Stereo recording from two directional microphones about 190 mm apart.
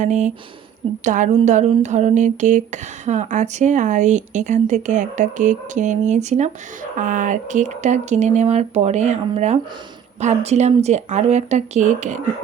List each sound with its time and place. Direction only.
0.0 s speech: 40° right (ahead or behind)